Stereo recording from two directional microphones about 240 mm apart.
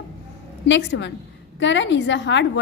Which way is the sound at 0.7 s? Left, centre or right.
Left.